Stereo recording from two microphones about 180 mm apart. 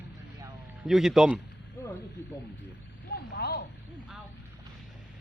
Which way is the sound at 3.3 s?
60° left (ahead or behind).